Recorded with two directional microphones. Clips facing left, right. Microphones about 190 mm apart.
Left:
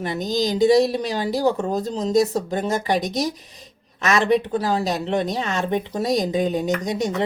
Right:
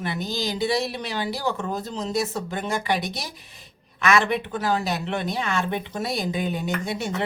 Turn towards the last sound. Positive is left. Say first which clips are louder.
# left 5 dB
turn(degrees=40)  # may be behind; listen again after turning